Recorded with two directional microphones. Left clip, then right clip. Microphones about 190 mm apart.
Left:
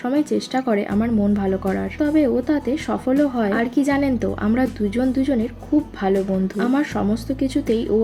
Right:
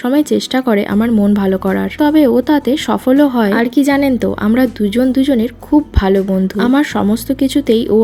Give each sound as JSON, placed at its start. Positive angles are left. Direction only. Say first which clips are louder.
{"t": 0.0, "sound": "speech", "louder": "right 7 dB", "side_deg": -35}